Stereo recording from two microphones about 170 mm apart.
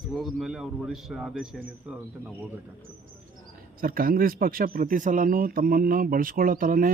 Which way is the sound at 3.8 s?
55° right (ahead or behind).